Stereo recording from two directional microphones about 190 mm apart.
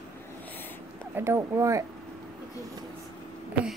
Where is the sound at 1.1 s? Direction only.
15° right (ahead or behind).